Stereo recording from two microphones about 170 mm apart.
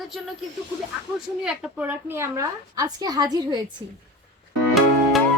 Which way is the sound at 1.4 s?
10° right (ahead or behind).